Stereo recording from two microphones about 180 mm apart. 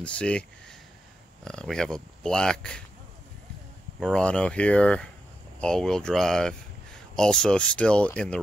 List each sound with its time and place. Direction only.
0.0 s speech: 5° left (ahead or behind)
4.0 s speech: 5° left (ahead or behind)